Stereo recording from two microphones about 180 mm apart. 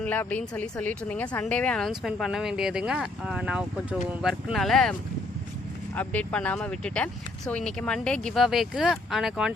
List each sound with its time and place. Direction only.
0.0 s speech: 10° left (ahead or behind)
6.0 s speech: 5° left (ahead or behind)